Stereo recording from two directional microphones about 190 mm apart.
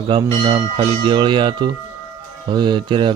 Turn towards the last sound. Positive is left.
turn(degrees=-25)  # may be behind; listen again after turning